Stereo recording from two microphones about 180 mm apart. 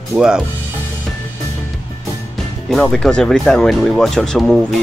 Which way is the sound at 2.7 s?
5° left (ahead or behind).